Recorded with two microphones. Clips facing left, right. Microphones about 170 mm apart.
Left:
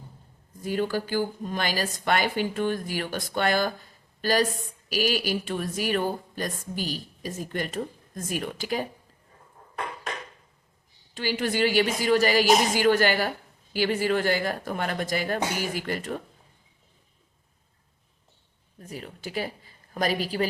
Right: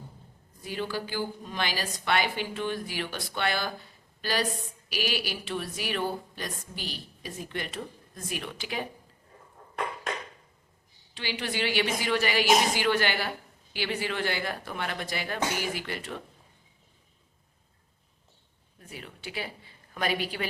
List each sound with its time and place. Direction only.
0.6 s a woman's voice: 45° left (ahead or behind)
11.1 s a woman's voice: 45° left (ahead or behind)
18.8 s speech: 40° left (ahead or behind)